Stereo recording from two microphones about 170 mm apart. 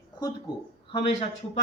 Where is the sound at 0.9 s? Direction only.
35° left (ahead or behind).